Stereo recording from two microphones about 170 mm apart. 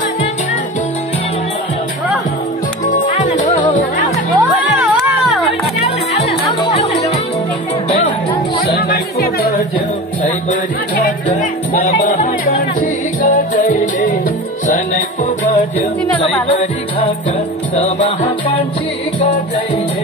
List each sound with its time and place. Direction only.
2.9 s music: 45° left (ahead or behind)
4.4 s music: centre (ahead or behind)
5.9 s music: 35° left (ahead or behind)
8.7 s music: 60° left (ahead or behind)
11.7 s music: 40° left (ahead or behind)
12.1 s music: 50° left (ahead or behind)
16.1 s music: 10° left (ahead or behind)
16.4 s music: 30° left (ahead or behind)
17.7 s music: 45° left (ahead or behind)